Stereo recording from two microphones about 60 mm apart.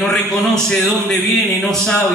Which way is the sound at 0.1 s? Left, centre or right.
Centre.